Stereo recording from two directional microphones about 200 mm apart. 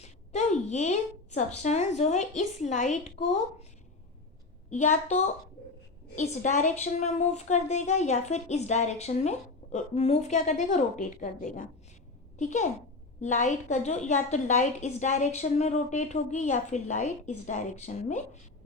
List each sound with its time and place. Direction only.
0.0 s a woman's voice: 35° left (ahead or behind)
4.7 s a woman's voice: 40° left (ahead or behind)